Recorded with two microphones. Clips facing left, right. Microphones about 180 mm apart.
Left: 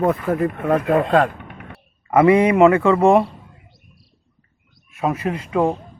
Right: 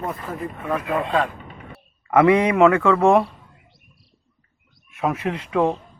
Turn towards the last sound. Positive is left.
turn(degrees=5)  # may be behind; listen again after turning